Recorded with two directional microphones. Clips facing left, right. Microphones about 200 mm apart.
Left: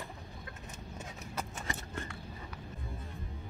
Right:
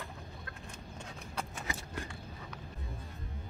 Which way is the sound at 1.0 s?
Centre (ahead or behind).